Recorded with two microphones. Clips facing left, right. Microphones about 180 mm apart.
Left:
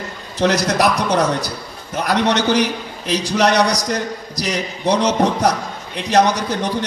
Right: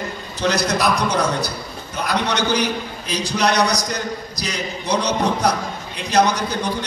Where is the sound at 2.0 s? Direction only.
90° left.